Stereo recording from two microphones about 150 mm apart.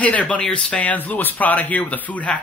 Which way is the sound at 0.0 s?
10° left (ahead or behind).